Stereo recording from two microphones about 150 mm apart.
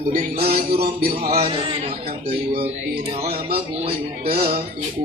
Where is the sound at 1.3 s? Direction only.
40° right (ahead or behind).